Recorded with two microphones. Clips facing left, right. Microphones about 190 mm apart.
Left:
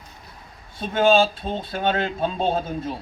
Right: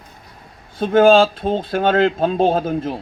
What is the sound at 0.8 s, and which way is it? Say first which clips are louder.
Speech: right 6 dB; 55° right (ahead or behind).